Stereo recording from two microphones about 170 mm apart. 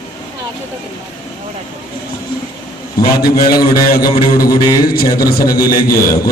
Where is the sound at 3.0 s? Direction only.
65° left (ahead or behind).